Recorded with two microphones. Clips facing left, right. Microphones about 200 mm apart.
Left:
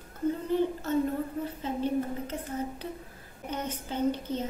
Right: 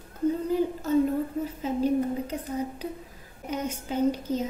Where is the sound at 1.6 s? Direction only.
10° right (ahead or behind).